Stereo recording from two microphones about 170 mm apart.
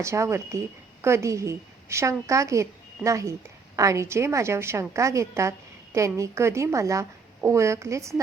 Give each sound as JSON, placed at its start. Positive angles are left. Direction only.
{"t": 0.0, "sound": "a woman's voice", "side_deg": -15}